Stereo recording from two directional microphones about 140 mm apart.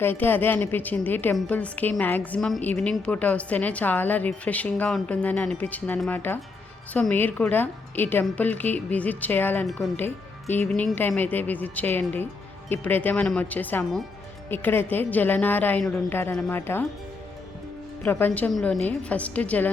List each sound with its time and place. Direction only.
0.0 s a woman's voice: 15° left (ahead or behind)
18.0 s a woman's voice: 15° left (ahead or behind)